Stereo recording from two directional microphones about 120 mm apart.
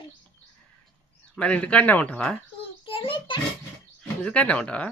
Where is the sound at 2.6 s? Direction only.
50° left (ahead or behind).